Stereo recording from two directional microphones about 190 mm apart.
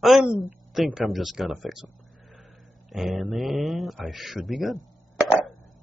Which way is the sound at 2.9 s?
Centre (ahead or behind).